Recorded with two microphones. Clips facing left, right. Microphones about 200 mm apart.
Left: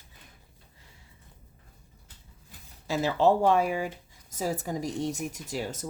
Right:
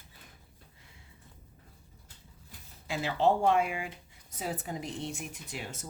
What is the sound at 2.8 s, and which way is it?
Speech, 40° left (ahead or behind).